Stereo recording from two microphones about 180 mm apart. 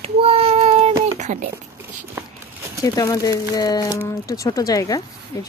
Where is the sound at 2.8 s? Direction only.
20° left (ahead or behind).